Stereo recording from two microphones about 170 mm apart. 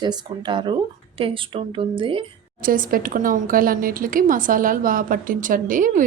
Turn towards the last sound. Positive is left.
turn(degrees=-50)  # may be behind; listen again after turning